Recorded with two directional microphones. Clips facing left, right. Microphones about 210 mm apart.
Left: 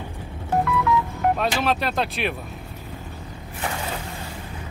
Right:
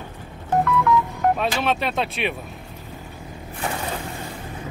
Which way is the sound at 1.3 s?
Centre (ahead or behind).